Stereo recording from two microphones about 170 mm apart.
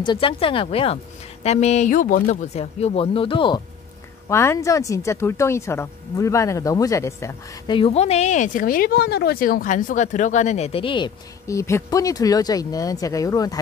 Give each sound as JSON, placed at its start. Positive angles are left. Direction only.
{"t": 0.0, "sound": "speech", "side_deg": 30}
{"t": 4.3, "sound": "speech", "side_deg": 15}
{"t": 7.7, "sound": "speech", "side_deg": 35}